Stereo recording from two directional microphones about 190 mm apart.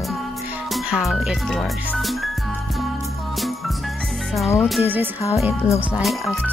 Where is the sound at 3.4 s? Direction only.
Centre (ahead or behind).